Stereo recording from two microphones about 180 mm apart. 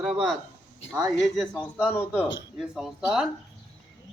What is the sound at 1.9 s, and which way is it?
Speech, 10° left (ahead or behind).